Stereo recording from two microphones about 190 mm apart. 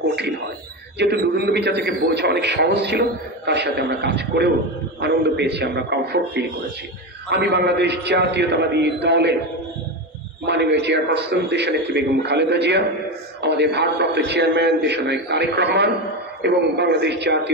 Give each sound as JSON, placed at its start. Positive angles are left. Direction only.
{"t": 0.9, "sound": "a man's voice", "side_deg": -60}
{"t": 10.4, "sound": "a man's voice", "side_deg": -65}